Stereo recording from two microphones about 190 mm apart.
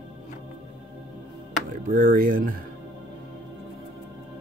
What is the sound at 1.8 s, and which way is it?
Speech, 50° right (ahead or behind).